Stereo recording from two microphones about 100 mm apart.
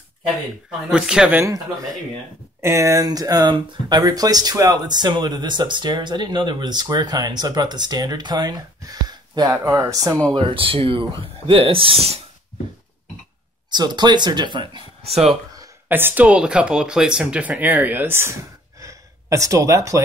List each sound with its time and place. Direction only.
0.7 s speech: 5° right (ahead or behind)
2.6 s speech: 30° right (ahead or behind)
10.3 s speech: 60° right (ahead or behind); by 12.2 s 80° right
13.7 s speech: 45° right (ahead or behind)
15.9 s speech: 20° right (ahead or behind)
18.8 s gasp: 30° right (ahead or behind)